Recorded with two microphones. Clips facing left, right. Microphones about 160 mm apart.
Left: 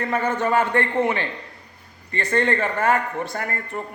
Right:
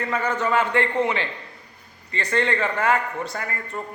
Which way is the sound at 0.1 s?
50° left (ahead or behind).